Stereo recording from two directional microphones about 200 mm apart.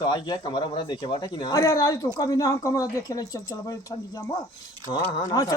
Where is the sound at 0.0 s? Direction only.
20° left (ahead or behind).